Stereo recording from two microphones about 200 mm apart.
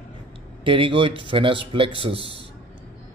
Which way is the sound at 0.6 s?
25° right (ahead or behind).